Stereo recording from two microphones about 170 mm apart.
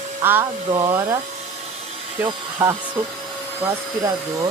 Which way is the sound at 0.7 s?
25° right (ahead or behind).